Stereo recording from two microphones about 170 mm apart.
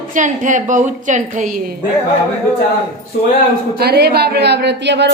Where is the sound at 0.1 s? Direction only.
50° right (ahead or behind).